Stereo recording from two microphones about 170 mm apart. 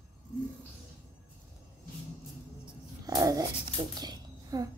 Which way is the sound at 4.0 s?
25° right (ahead or behind).